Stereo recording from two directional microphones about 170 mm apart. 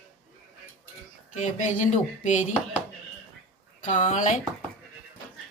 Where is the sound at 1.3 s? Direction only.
45° left (ahead or behind).